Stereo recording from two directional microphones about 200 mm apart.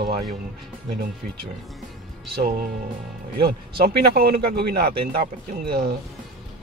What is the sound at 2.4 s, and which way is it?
Speech, 50° right (ahead or behind).